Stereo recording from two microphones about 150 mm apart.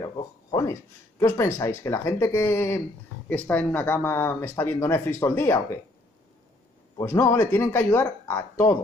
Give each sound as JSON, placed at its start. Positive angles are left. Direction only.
{"t": 0.0, "sound": "speech", "side_deg": 25}
{"t": 7.0, "sound": "speech", "side_deg": 20}